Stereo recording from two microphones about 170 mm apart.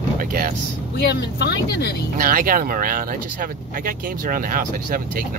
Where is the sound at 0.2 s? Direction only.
55° right (ahead or behind).